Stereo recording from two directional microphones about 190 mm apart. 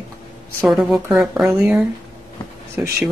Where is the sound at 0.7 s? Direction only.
Centre (ahead or behind).